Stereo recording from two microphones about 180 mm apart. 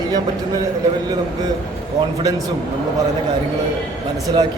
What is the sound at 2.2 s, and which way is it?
Speech, 20° right (ahead or behind).